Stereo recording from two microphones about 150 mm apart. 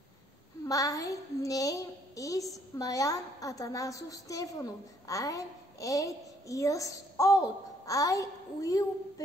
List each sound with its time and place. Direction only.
0.7 s a woman's voice: 20° left (ahead or behind)